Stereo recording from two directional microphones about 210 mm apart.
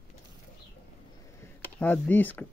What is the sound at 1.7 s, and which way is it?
Speech, 10° left (ahead or behind).